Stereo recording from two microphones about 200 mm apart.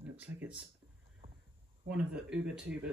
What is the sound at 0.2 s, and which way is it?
Speech, 5° right (ahead or behind).